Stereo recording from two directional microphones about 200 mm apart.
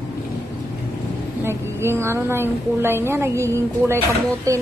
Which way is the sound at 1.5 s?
10° right (ahead or behind).